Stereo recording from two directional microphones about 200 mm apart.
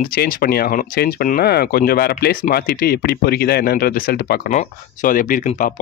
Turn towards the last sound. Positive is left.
turn(degrees=40)  # may be behind; listen again after turning